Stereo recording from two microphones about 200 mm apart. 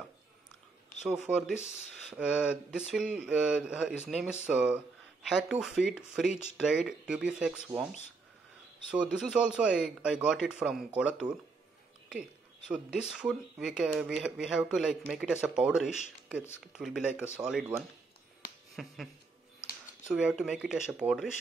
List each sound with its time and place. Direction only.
1.0 s speech: 5° right (ahead or behind)
8.9 s speech: 5° right (ahead or behind)
20.1 s speech: 5° right (ahead or behind)